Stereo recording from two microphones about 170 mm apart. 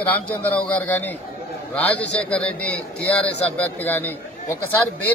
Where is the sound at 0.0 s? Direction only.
10° left (ahead or behind).